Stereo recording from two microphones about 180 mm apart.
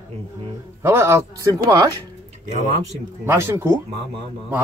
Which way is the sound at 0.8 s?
15° right (ahead or behind).